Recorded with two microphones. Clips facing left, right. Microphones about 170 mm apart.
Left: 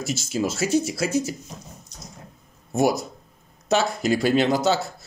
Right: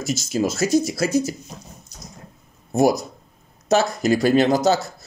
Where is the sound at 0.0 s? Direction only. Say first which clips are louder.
Right 3 dB; 40° right (ahead or behind).